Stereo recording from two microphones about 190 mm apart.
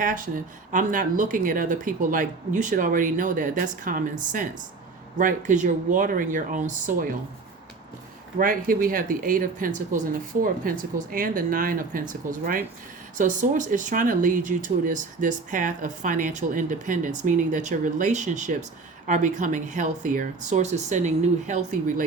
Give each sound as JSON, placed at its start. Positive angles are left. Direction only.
{"t": 0.0, "sound": "speech", "side_deg": -45}
{"t": 8.4, "sound": "speech", "side_deg": -45}